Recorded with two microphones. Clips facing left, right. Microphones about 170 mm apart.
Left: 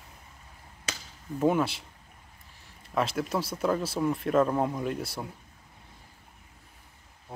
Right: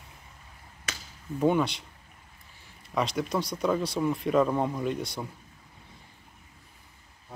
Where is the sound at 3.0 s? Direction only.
5° left (ahead or behind).